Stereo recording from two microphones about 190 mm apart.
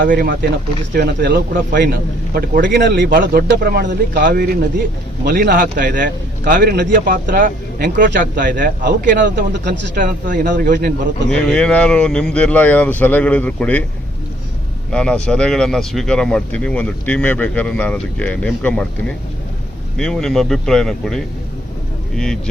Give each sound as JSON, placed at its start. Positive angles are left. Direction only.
{"t": 0.0, "sound": "speech", "side_deg": -50}
{"t": 0.9, "sound": "speech", "side_deg": -60}
{"t": 5.7, "sound": "speech", "side_deg": -45}
{"t": 9.2, "sound": "speech", "side_deg": -65}
{"t": 10.0, "sound": "speech", "side_deg": -45}
{"t": 10.5, "sound": "speech", "side_deg": -65}
{"t": 11.3, "sound": "speech", "side_deg": 5}
{"t": 14.9, "sound": "speech", "side_deg": 5}